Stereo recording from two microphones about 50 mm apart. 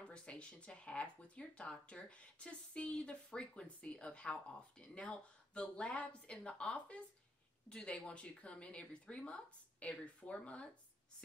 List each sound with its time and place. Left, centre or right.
0.0 s speech: left